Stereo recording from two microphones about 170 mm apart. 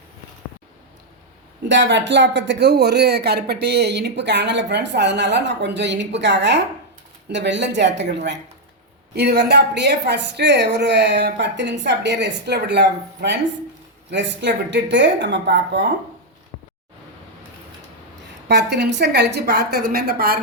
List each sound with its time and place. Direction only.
1.6 s speech: 90° right
9.1 s speech: 75° right (ahead or behind); by 15.9 s 90° right
18.4 s a woman's voice: 80° right